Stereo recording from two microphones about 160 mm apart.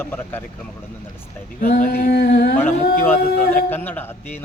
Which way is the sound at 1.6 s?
60° left (ahead or behind).